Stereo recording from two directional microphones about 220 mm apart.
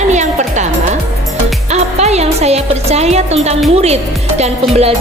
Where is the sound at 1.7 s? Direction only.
30° right (ahead or behind).